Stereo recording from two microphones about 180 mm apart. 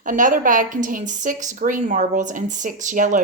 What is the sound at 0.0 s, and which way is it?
Speech, 45° right (ahead or behind).